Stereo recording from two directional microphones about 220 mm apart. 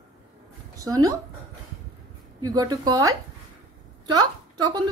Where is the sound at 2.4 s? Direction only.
15° right (ahead or behind).